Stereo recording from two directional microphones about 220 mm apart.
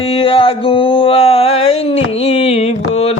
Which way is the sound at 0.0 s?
25° left (ahead or behind).